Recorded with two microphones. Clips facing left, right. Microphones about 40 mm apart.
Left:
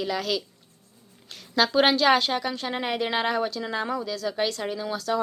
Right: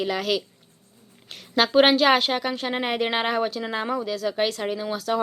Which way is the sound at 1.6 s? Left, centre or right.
Centre.